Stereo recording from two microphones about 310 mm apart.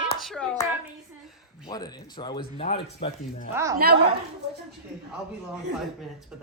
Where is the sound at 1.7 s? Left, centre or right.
Centre.